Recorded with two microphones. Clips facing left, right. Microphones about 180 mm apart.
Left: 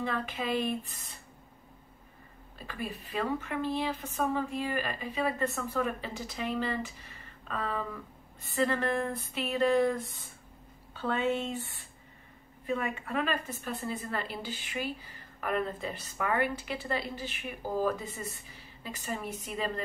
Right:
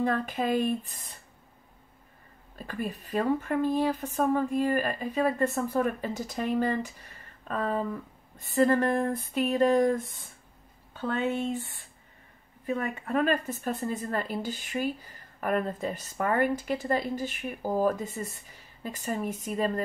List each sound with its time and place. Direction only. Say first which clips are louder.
0.0 s a woman's voice: right 6 dB; 45° right (ahead or behind)
2.6 s a woman's voice: right 4 dB; 45° right (ahead or behind)
12.7 s a woman's voice: right 3 dB; 40° right (ahead or behind)